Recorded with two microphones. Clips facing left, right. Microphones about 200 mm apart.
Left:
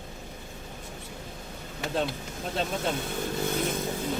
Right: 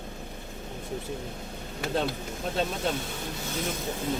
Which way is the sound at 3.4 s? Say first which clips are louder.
Left 4 dB; 55° left (ahead or behind).